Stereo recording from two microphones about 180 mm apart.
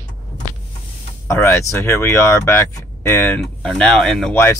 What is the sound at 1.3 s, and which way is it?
Speech, 15° left (ahead or behind).